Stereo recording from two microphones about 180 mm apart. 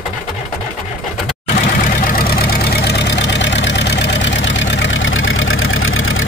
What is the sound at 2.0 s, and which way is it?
Vehicle, 55° left (ahead or behind).